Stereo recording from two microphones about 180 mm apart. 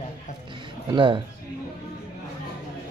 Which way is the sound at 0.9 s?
25° right (ahead or behind).